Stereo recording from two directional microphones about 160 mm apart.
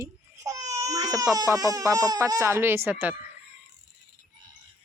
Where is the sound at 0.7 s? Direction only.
20° right (ahead or behind).